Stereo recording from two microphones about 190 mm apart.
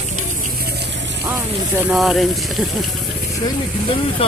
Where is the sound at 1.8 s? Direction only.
5° right (ahead or behind).